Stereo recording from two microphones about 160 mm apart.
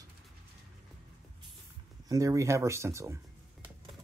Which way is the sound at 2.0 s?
20° right (ahead or behind).